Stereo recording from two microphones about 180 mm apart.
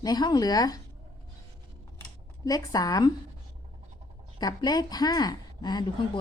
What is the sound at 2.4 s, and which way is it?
Speech, 20° left (ahead or behind).